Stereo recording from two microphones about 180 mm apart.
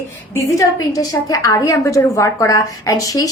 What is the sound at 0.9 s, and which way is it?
A woman's voice, 20° left (ahead or behind).